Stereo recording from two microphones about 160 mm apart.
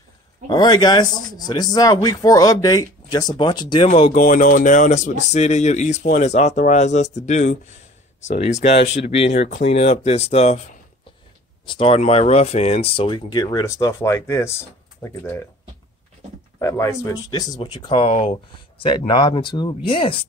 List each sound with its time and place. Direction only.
0.5 s speech: 25° left (ahead or behind)
4.2 s speech: 55° left (ahead or behind); by 10.6 s 40° left (ahead or behind)
11.6 s speech: 35° left (ahead or behind); by 15.4 s 15° left (ahead or behind)
16.5 s speech: 20° left (ahead or behind); by 20.2 s 35° left (ahead or behind)